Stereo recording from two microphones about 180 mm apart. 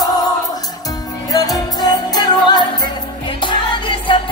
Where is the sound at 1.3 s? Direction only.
20° left (ahead or behind).